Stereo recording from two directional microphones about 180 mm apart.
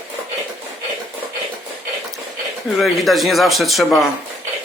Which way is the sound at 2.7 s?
Centre (ahead or behind).